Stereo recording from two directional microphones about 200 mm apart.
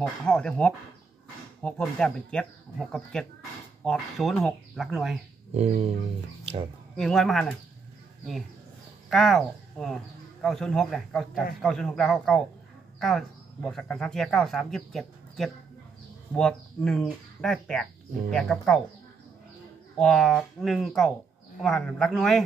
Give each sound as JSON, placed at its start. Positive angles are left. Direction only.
{"t": 0.0, "sound": "speech", "side_deg": 5}
{"t": 5.5, "sound": "guitar", "side_deg": -30}
{"t": 7.0, "sound": "speech", "side_deg": 0}
{"t": 9.1, "sound": "speech", "side_deg": 0}
{"t": 20.0, "sound": "speech", "side_deg": 0}